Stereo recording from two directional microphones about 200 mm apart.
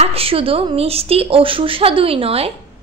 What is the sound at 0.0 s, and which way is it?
A woman's voice, 30° right (ahead or behind).